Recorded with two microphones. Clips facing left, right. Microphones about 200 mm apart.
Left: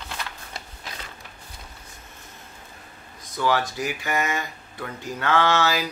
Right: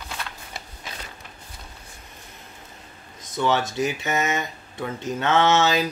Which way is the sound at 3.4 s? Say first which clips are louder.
Right 2 dB; 25° right (ahead or behind).